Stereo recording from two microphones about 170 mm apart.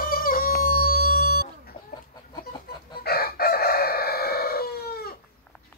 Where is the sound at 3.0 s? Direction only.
65° left (ahead or behind).